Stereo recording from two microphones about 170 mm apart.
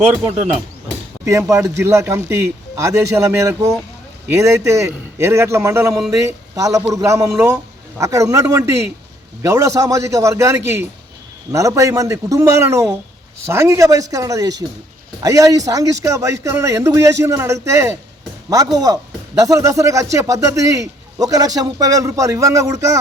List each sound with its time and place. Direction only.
1.2 s speech: 15° right (ahead or behind)